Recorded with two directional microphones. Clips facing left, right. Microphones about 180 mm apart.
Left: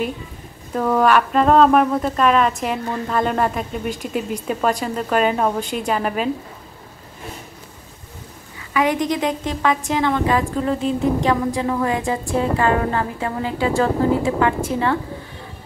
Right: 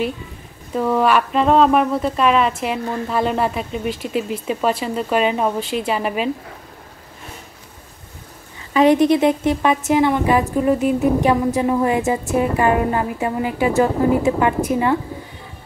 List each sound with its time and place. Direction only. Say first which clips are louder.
0.7 s speech: even; centre (ahead or behind)
8.9 s speech: right 7 dB; 15° left (ahead or behind)
9.5 s a woman's voice: right 4 dB; 15° right (ahead or behind)